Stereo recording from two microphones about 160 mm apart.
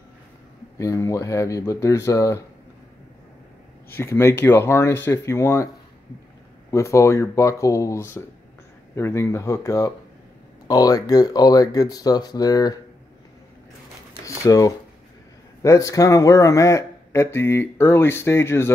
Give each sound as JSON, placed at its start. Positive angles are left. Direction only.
{"t": 0.7, "sound": "speech", "side_deg": 20}
{"t": 3.9, "sound": "speech", "side_deg": 15}
{"t": 6.7, "sound": "speech", "side_deg": 20}
{"t": 14.2, "sound": "a sound", "side_deg": 20}
{"t": 15.6, "sound": "speech", "side_deg": 20}